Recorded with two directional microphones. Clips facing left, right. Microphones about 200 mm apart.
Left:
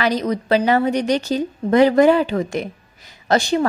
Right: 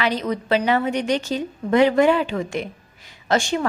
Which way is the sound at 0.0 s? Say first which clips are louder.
Left 3 dB; 40° left (ahead or behind).